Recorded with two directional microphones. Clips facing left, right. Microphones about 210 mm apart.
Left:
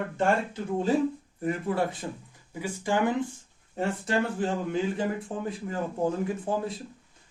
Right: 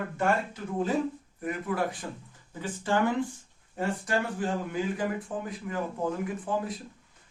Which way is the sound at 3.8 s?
25° left (ahead or behind).